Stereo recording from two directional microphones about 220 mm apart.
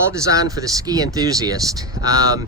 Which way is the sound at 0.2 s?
15° right (ahead or behind).